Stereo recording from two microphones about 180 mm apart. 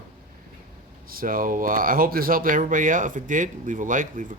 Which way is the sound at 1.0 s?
55° right (ahead or behind).